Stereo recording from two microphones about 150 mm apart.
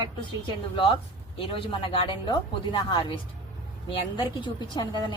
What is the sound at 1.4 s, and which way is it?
A woman's voice, 35° left (ahead or behind).